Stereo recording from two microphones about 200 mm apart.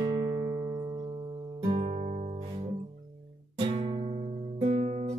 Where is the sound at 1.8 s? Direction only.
35° right (ahead or behind).